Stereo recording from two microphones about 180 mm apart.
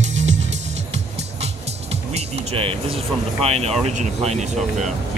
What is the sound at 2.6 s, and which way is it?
Speech, 30° right (ahead or behind).